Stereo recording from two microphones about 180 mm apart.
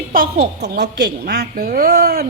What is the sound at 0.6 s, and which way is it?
A woman's voice, 65° right (ahead or behind).